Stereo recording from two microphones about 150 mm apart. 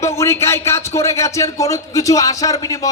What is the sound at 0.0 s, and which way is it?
Speech, 20° left (ahead or behind).